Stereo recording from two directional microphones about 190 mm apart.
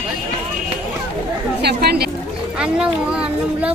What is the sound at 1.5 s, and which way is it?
Speech, 60° right (ahead or behind).